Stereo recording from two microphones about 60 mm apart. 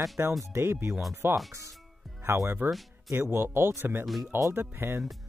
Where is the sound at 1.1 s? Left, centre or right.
Right.